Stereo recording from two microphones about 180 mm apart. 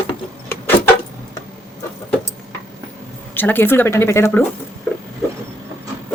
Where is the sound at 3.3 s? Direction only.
10° left (ahead or behind).